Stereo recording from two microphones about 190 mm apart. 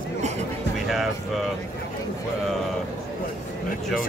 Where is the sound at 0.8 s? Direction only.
Centre (ahead or behind).